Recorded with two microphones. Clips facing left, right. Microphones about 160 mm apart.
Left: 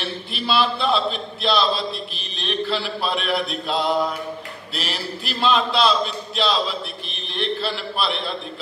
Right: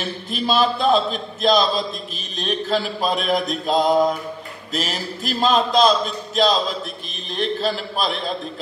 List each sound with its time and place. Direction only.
0.0 s a man's voice: 45° right (ahead or behind)